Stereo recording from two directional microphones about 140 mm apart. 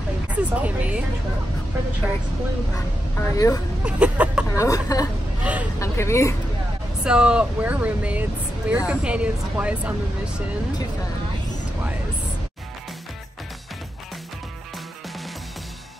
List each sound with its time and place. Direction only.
0.3 s speech: 10° right (ahead or behind)
3.2 s speech: 25° left (ahead or behind)
3.8 s speech: 10° right (ahead or behind)
4.6 s speech: 25° left (ahead or behind)
5.4 s speech: 10° right (ahead or behind)
5.8 s speech: 20° left (ahead or behind)
7.1 s speech: 5° right (ahead or behind)